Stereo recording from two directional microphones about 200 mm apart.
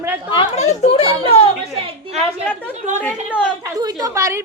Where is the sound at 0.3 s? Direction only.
30° left (ahead or behind).